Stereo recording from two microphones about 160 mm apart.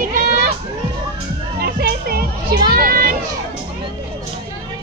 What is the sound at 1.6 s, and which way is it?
Music, 70° right (ahead or behind).